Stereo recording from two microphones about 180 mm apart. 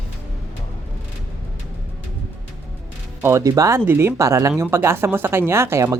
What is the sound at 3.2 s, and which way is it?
Speech, 15° right (ahead or behind).